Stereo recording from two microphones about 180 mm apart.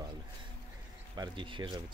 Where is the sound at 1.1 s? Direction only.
25° right (ahead or behind).